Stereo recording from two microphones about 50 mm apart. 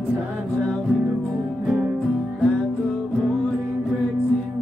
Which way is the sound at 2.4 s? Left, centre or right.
Left.